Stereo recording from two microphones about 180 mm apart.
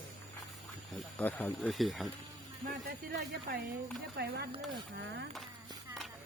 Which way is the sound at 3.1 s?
65° right (ahead or behind).